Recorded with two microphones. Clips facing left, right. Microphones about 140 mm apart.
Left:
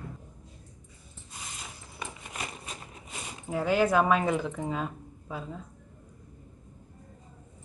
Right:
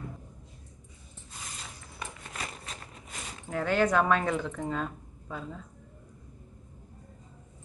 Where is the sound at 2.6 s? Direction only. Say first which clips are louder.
Left 1 dB; 10° left (ahead or behind).